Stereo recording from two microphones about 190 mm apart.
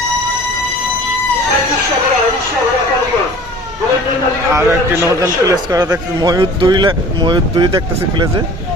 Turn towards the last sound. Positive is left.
turn(degrees=-25)  # may be behind; listen again after turning